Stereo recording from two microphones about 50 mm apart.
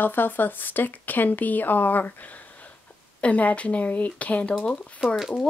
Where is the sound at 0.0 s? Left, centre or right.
Left.